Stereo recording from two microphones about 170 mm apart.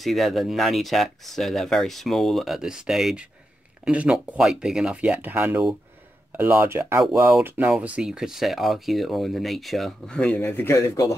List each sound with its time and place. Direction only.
0.0 s speech: centre (ahead or behind); by 11.1 s 15° left (ahead or behind)